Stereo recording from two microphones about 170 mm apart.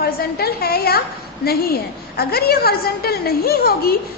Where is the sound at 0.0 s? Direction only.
65° left (ahead or behind).